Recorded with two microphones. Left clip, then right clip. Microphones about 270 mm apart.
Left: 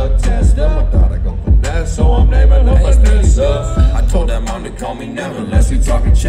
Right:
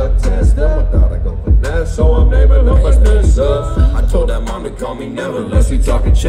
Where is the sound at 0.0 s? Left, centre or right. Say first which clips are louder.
Right 1 dB; centre.